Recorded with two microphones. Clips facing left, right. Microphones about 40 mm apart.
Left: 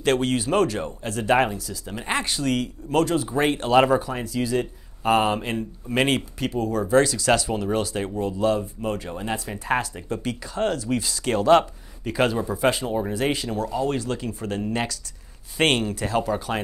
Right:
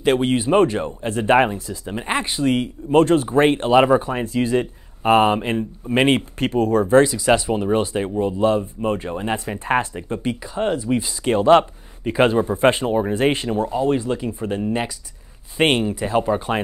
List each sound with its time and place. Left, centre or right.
0.0 s speech: centre
3.7 s speech: centre
4.0 s speech: right
6.3 s speech: right
7.0 s speech: centre